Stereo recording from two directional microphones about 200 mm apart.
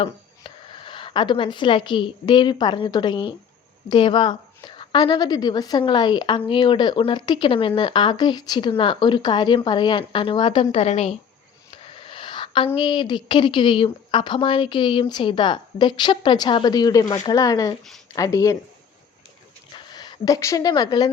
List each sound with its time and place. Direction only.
0.0 s a woman's voice: 25° left (ahead or behind)
19.7 s speech: 20° left (ahead or behind)